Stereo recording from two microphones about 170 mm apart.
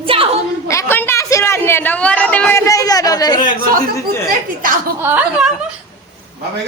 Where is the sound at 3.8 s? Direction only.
55° right (ahead or behind).